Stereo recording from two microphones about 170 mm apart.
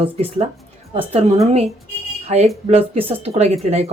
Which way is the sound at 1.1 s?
40° right (ahead or behind).